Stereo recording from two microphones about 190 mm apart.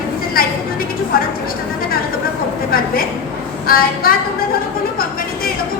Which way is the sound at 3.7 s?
50° left (ahead or behind).